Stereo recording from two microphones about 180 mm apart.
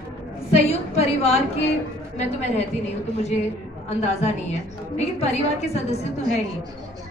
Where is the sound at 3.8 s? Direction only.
40° left (ahead or behind).